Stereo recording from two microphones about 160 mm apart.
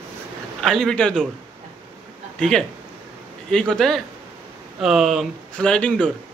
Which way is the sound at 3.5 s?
5° left (ahead or behind).